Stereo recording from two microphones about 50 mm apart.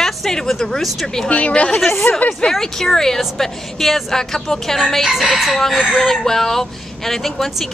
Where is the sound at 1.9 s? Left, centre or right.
Left.